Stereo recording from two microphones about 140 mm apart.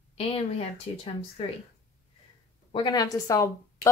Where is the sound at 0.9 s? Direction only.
40° left (ahead or behind).